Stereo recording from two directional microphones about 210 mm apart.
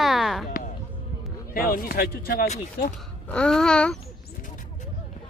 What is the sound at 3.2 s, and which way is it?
Speech, 5° left (ahead or behind).